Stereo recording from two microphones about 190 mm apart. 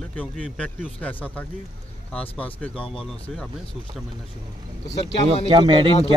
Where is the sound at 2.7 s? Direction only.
30° left (ahead or behind).